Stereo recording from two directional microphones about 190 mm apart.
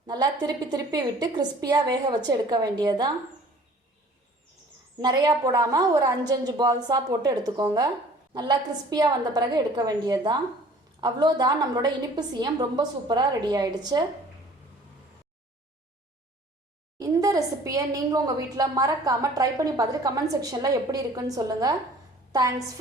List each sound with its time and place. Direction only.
0.1 s a woman's voice: 20° right (ahead or behind)
4.9 s a woman's voice: 20° right (ahead or behind)
17.0 s a woman's voice: 20° right (ahead or behind)